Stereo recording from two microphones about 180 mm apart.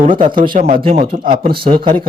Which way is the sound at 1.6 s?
25° right (ahead or behind).